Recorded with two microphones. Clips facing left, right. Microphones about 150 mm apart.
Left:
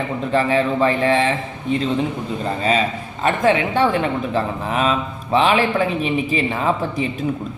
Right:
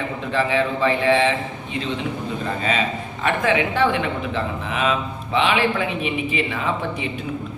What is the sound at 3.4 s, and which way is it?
A woman's voice, 35° left (ahead or behind).